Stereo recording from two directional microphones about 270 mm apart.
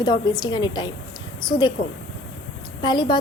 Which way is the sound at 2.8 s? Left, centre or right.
Centre.